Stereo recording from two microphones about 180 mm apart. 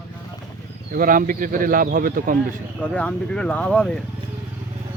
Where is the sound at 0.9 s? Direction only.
50° right (ahead or behind).